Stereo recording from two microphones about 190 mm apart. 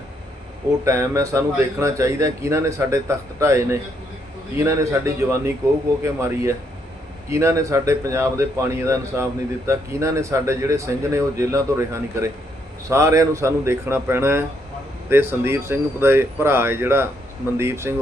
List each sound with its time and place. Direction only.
0.9 s speech: 15° right (ahead or behind)